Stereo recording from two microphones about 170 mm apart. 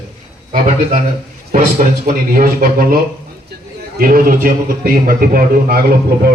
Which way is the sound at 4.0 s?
55° right (ahead or behind).